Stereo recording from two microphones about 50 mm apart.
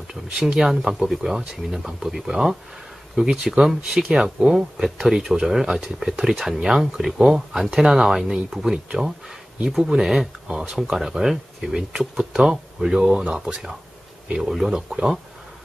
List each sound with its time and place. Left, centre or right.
0.1 s speech: centre
13.1 s speech: right
14.7 s speech: centre